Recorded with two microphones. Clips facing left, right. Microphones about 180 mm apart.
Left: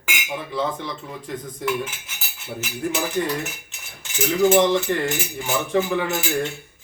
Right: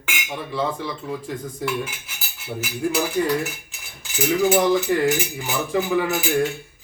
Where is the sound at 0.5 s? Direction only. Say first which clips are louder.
Right 1 dB; centre (ahead or behind).